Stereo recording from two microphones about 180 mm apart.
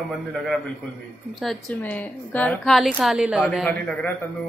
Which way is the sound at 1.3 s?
Centre (ahead or behind).